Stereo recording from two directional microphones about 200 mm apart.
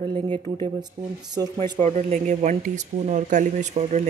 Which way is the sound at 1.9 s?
35° right (ahead or behind).